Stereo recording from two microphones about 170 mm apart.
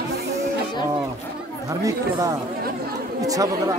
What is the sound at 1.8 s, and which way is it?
Speech, 20° right (ahead or behind).